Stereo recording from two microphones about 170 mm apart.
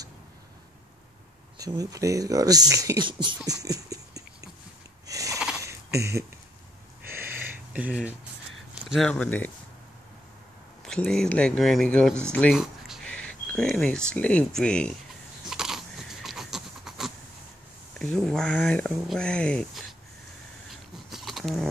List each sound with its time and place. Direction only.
1.6 s speech: 20° right (ahead or behind)
5.0 s a sound: 20° right (ahead or behind)
5.9 s speech: 15° right (ahead or behind)
7.1 s a sound: 15° right (ahead or behind)
8.8 s speech: centre (ahead or behind)
10.8 s speech: 5° left (ahead or behind)
15.4 s pant: 5° right (ahead or behind)
17.9 s speech: 5° left (ahead or behind)
21.1 s roaring cats: centre (ahead or behind)